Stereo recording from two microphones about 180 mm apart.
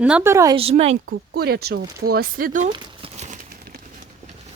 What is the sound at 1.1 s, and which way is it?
Speech, 60° right (ahead or behind).